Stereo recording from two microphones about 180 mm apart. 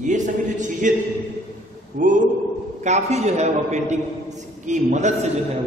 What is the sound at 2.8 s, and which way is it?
A man's voice, 40° right (ahead or behind).